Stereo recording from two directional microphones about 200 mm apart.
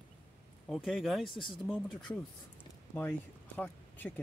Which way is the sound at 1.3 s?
25° left (ahead or behind).